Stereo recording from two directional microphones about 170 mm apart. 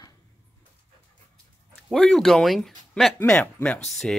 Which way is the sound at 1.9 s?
Centre (ahead or behind).